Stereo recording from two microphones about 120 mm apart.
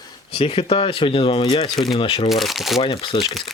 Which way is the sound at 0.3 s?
50° left (ahead or behind).